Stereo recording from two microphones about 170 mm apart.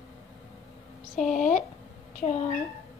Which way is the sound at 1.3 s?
45° left (ahead or behind).